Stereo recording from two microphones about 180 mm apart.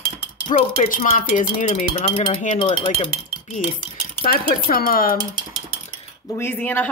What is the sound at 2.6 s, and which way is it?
Speech, 30° left (ahead or behind).